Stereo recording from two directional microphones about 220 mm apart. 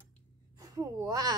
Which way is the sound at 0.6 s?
15° right (ahead or behind).